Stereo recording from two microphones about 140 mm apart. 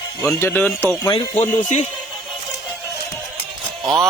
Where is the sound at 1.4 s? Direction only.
55° left (ahead or behind).